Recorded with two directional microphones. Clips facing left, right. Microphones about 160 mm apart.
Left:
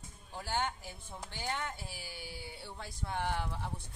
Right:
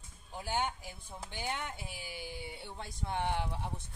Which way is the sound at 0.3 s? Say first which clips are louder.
Right 1 dB; 15° right (ahead or behind).